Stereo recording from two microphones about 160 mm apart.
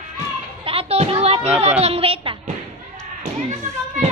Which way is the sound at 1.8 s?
35° right (ahead or behind).